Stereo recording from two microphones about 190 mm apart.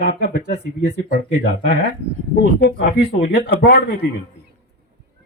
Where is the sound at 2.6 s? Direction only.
65° left (ahead or behind).